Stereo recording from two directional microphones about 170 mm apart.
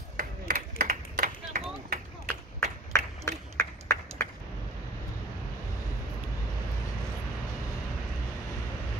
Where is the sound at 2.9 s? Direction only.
20° left (ahead or behind).